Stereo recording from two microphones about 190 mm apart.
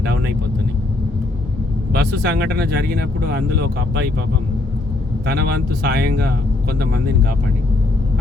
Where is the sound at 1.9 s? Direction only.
55° right (ahead or behind).